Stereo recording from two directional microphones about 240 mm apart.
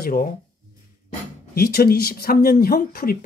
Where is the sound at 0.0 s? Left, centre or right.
Left.